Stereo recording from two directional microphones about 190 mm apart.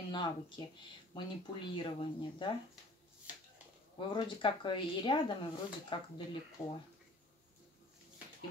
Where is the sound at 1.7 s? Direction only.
25° left (ahead or behind).